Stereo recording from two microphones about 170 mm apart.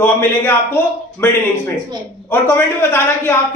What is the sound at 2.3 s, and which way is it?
A man's voice, 15° left (ahead or behind).